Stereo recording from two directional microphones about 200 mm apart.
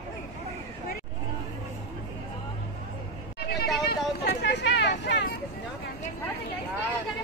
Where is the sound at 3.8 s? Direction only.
55° left (ahead or behind).